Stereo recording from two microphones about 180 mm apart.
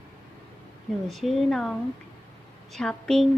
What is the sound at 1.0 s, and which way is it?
Speech, centre (ahead or behind).